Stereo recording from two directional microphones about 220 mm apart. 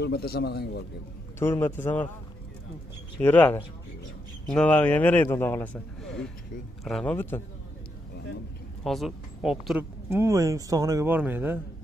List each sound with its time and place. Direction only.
0.0 s a man's voice: 45° left (ahead or behind)
1.4 s a man's voice: 10° left (ahead or behind)
3.2 s a man's voice: 10° left (ahead or behind)
8.8 s speech: centre (ahead or behind)